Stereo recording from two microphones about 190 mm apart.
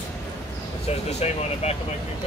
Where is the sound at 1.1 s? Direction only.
35° left (ahead or behind).